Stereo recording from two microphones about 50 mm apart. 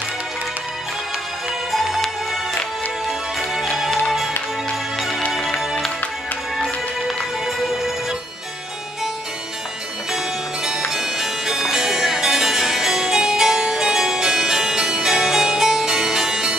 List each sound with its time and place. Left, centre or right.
1.7 s music: centre
3.1 s music: centre
5.3 s music: centre
10.1 s music: centre